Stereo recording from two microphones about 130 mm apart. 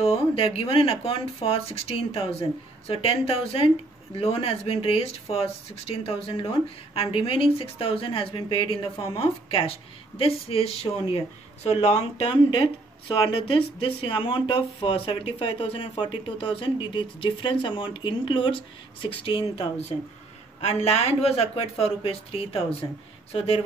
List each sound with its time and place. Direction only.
0.0 s speech: 50° left (ahead or behind)